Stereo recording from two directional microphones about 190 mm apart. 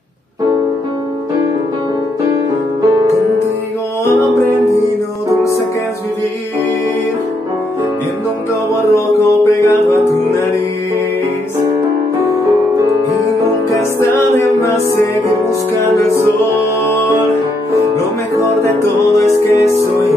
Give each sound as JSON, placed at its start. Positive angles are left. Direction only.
{"t": 4.0, "sound": "music", "side_deg": 15}
{"t": 8.9, "sound": "music", "side_deg": 15}
{"t": 16.5, "sound": "music", "side_deg": 10}
{"t": 19.1, "sound": "music", "side_deg": 15}